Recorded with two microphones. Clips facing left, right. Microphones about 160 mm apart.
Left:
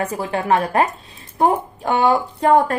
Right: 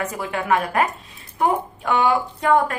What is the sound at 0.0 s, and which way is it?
A woman's voice, 30° left (ahead or behind).